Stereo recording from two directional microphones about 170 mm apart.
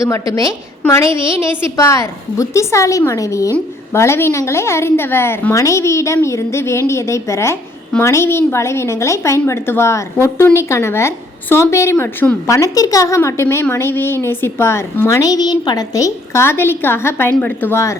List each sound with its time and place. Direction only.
0.0 s a woman's voice: 20° left (ahead or behind)